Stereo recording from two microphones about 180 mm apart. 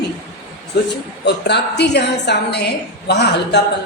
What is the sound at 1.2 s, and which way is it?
A woman's voice, 70° left (ahead or behind).